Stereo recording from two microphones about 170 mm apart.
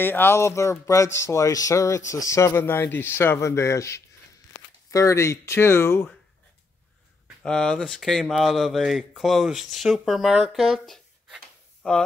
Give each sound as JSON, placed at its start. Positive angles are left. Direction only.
{"t": 0.0, "sound": "speech", "side_deg": 10}
{"t": 7.4, "sound": "speech", "side_deg": 5}